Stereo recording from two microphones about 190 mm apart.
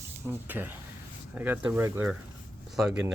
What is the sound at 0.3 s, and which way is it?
Speech, 10° right (ahead or behind).